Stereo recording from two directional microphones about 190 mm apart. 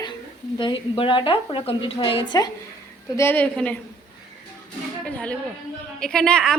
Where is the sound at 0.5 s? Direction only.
25° left (ahead or behind).